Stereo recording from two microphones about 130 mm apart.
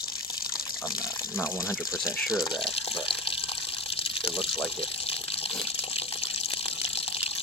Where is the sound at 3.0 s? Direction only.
45° left (ahead or behind).